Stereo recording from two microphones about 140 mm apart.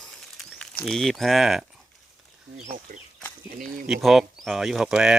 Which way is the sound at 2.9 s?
90° right.